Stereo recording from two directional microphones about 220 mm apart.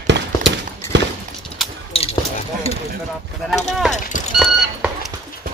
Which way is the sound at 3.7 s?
Centre (ahead or behind).